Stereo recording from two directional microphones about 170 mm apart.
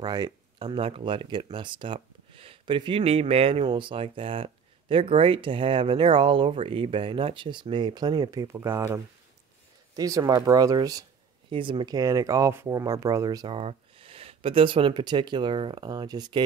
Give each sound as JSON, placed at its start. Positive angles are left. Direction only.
{"t": 0.0, "sound": "speech", "side_deg": -25}
{"t": 13.6, "sound": "speech", "side_deg": -35}